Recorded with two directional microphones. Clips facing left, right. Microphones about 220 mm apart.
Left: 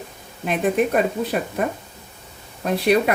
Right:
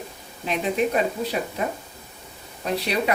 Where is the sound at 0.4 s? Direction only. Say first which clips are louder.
Left 5 dB; 50° left (ahead or behind).